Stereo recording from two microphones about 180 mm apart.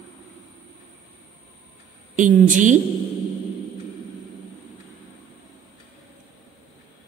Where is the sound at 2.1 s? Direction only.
45° right (ahead or behind).